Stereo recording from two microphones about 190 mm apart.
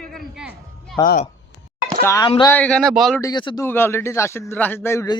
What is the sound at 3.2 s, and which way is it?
Speech, 25° left (ahead or behind).